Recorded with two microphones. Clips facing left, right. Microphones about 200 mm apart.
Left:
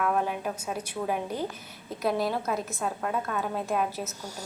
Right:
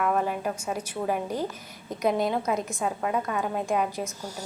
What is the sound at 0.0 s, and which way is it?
Speech, centre (ahead or behind).